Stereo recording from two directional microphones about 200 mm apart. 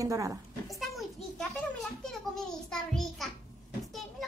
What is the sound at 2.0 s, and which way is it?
A woman's voice, 5° left (ahead or behind).